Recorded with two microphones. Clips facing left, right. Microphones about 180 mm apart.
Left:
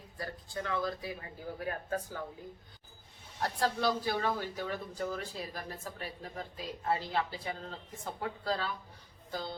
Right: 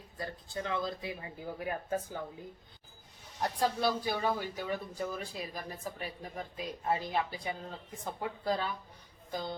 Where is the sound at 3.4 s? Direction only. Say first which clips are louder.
Right 1 dB; 15° right (ahead or behind).